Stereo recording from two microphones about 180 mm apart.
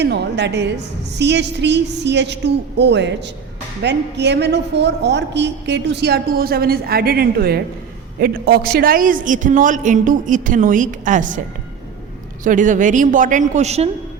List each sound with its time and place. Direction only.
0.0 s a woman's voice: 70° right (ahead or behind); by 11.3 s 45° right (ahead or behind)
12.4 s a woman's voice: 45° right (ahead or behind)